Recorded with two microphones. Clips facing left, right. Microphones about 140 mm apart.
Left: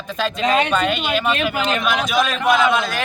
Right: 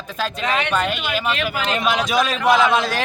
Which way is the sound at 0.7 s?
5° right (ahead or behind).